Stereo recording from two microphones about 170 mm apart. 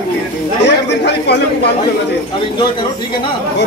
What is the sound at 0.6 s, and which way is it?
Speech, 85° left.